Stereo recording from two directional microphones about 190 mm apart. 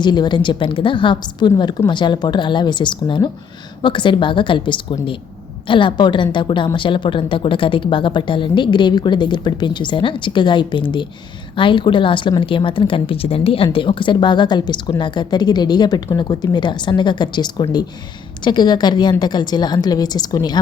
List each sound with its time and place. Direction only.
0.0 s speech: 25° left (ahead or behind)